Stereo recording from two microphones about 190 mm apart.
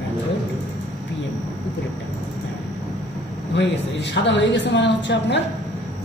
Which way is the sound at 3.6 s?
70° left (ahead or behind).